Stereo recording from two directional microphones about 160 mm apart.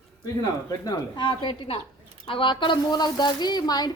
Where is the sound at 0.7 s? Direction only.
25° left (ahead or behind).